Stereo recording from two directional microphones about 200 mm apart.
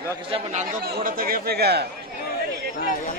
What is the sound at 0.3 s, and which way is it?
Speech, 35° right (ahead or behind).